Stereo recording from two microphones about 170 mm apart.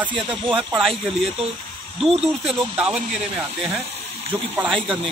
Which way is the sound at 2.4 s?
5° right (ahead or behind).